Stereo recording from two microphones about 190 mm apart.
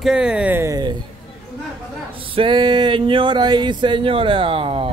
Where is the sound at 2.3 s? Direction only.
25° right (ahead or behind).